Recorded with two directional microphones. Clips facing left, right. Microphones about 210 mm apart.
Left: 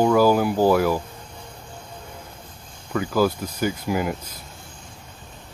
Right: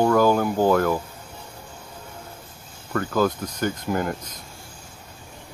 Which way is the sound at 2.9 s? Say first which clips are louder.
Left 1 dB; 10° left (ahead or behind).